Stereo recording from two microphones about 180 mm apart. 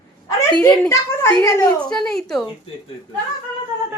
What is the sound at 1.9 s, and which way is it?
Speech, 5° left (ahead or behind).